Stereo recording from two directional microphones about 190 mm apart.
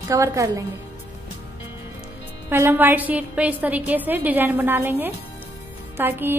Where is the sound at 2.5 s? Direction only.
10° right (ahead or behind).